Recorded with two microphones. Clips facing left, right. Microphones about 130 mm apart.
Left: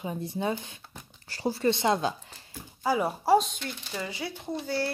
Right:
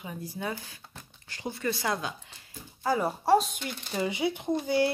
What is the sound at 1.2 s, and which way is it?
Speech, 35° left (ahead or behind).